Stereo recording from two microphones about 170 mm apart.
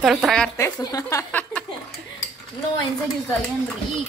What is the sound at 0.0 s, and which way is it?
Speech, centre (ahead or behind).